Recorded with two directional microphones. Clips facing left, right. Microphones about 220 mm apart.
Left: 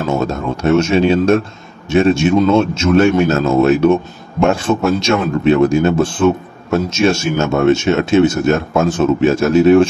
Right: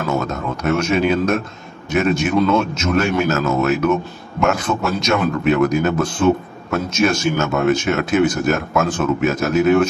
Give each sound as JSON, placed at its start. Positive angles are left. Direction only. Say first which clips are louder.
{"t": 0.2, "sound": "a man's voice", "louder": "left 5 dB", "side_deg": 30}